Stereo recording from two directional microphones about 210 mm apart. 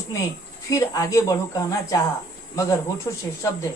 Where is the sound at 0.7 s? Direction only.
15° left (ahead or behind).